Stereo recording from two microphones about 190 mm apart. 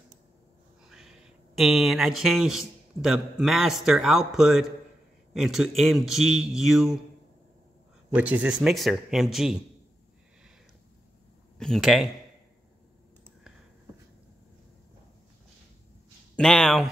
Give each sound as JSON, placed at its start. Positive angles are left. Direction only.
{"t": 0.8, "sound": "a sound", "side_deg": 0}
{"t": 3.0, "sound": "a man's voice", "side_deg": 0}
{"t": 8.1, "sound": "a man's voice", "side_deg": -5}
{"t": 11.5, "sound": "speech", "side_deg": 0}
{"t": 16.3, "sound": "a man's voice", "side_deg": 5}